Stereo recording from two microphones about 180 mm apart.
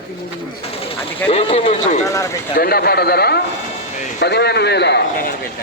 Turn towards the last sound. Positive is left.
turn(degrees=60)  # may be behind; listen again after turning